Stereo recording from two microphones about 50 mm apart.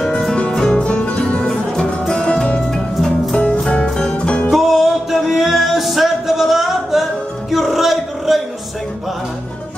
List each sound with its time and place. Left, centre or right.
0.3 s music: centre
3.8 s music: centre
4.5 s music: centre
7.5 s a sound: centre